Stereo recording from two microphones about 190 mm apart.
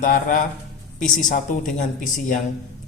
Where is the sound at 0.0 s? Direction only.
45° left (ahead or behind).